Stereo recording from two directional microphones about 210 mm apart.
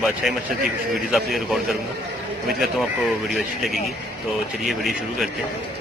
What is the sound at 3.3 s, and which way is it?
A man's voice, centre (ahead or behind).